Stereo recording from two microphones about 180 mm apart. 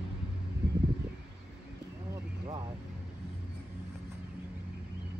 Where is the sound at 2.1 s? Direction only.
20° right (ahead or behind).